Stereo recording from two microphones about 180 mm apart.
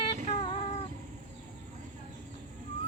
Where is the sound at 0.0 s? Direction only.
30° left (ahead or behind).